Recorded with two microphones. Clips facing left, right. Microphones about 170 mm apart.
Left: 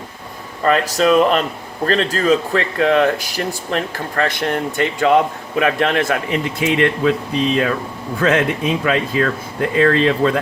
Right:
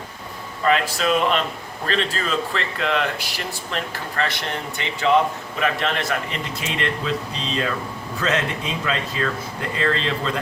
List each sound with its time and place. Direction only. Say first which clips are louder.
0.6 s speech: left 5 dB; 40° left (ahead or behind)